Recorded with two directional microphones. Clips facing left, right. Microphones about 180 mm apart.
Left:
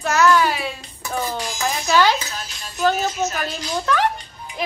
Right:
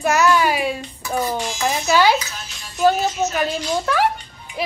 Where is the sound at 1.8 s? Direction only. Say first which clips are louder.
Right 1 dB; 10° right (ahead or behind).